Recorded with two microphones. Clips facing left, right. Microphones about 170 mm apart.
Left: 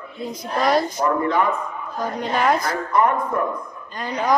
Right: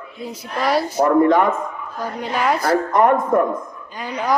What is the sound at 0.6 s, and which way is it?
Speech, 10° right (ahead or behind).